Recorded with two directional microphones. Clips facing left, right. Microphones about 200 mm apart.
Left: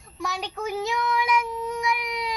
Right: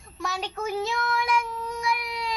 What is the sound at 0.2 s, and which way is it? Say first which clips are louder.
Child singing: even; 15° left (ahead or behind).